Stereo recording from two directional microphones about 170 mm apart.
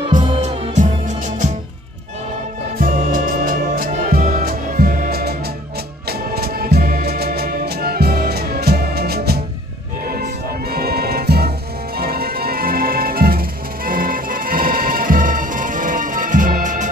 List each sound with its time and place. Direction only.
0.4 s music: 45° right (ahead or behind)
2.8 s music: 55° right (ahead or behind)